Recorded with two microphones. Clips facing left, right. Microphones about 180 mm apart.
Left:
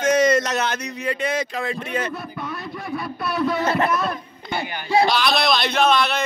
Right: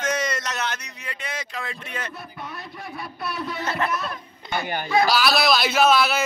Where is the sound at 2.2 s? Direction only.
90° left.